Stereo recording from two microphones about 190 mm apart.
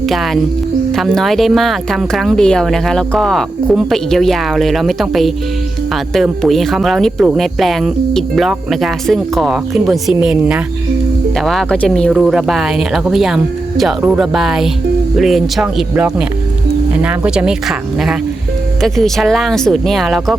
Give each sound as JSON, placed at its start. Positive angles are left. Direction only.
{"t": 0.0, "sound": "speech", "side_deg": 0}